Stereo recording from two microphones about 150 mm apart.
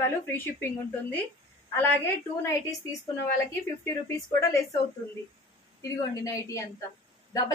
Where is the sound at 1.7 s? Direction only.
15° left (ahead or behind).